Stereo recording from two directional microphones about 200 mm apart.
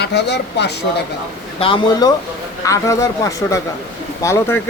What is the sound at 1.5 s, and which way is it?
A man's voice, 25° left (ahead or behind).